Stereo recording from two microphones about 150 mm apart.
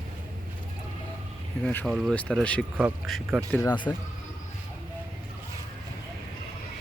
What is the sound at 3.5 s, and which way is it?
Speech, 20° left (ahead or behind).